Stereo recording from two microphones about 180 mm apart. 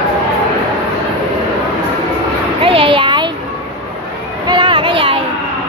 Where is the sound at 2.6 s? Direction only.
30° right (ahead or behind).